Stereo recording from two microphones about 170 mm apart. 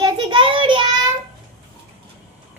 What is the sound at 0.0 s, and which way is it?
Child singing, 25° right (ahead or behind).